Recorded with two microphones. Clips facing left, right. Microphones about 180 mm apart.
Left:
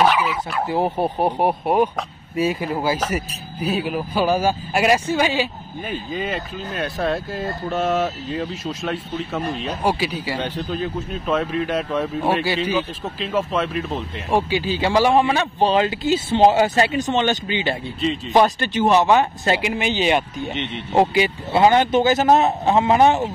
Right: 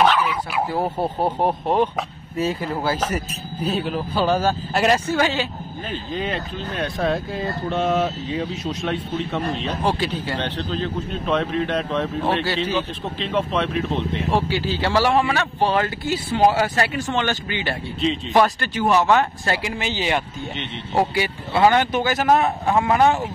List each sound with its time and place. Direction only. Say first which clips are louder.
0.0 s speech: even; 10° left (ahead or behind)
14.3 s speech: left 4 dB; 15° left (ahead or behind)